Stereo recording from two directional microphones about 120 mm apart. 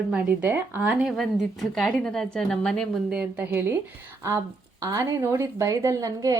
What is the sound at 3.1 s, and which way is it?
A woman's voice, 10° right (ahead or behind).